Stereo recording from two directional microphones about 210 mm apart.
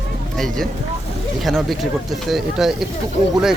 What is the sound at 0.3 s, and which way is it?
Speech, centre (ahead or behind).